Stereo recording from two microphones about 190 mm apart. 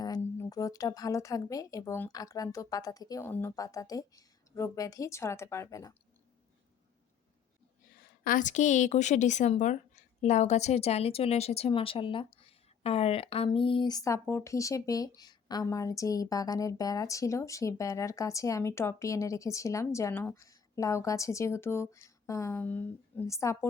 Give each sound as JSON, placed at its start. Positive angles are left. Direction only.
{"t": 0.0, "sound": "a woman's voice", "side_deg": 20}
{"t": 8.2, "sound": "a woman's voice", "side_deg": 45}